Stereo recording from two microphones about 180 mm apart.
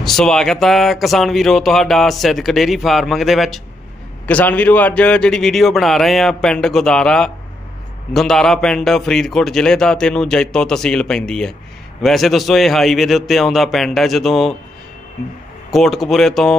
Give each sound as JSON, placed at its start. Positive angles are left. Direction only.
{"t": 0.0, "sound": "speech", "side_deg": 5}
{"t": 15.7, "sound": "speech", "side_deg": 0}